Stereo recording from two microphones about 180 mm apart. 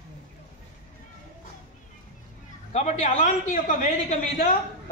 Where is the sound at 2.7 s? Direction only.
40° left (ahead or behind).